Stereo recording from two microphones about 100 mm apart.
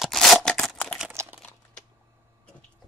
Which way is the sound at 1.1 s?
20° right (ahead or behind).